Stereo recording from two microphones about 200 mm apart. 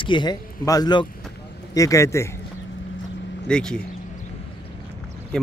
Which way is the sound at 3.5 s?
5° left (ahead or behind).